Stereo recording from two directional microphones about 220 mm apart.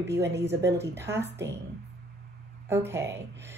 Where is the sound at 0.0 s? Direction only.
50° right (ahead or behind).